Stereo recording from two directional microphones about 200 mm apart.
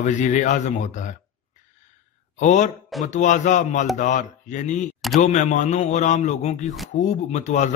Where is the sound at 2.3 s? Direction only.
35° left (ahead or behind).